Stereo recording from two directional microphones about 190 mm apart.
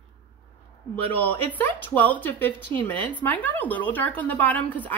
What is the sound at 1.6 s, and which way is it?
Speech, 10° left (ahead or behind).